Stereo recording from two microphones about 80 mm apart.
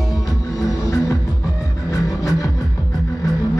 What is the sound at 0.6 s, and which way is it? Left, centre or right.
Music, left.